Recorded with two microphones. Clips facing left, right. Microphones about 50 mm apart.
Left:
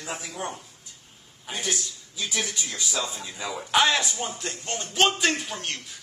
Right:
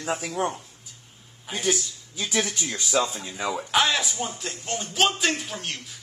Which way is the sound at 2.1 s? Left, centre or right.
Right.